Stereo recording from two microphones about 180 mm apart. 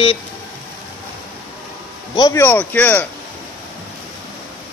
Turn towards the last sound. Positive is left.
turn(degrees=10)  # may be behind; listen again after turning